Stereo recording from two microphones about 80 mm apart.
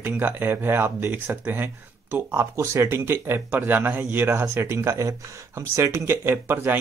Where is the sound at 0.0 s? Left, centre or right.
Right.